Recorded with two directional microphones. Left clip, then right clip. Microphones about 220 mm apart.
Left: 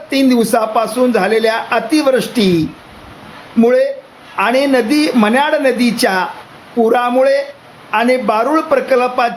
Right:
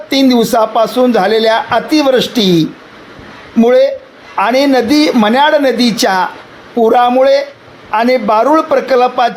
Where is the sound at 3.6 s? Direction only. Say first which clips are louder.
Right 3 dB; 15° right (ahead or behind).